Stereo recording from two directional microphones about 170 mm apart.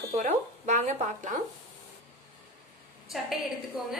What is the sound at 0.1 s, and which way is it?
Speech, 40° right (ahead or behind).